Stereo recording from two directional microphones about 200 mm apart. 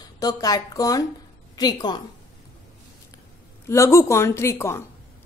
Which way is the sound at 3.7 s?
15° left (ahead or behind).